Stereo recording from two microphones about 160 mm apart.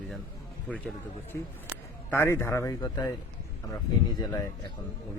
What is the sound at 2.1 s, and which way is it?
Speech, 15° left (ahead or behind).